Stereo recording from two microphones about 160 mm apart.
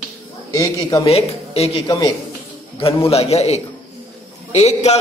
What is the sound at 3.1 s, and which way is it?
A man's voice, 40° left (ahead or behind).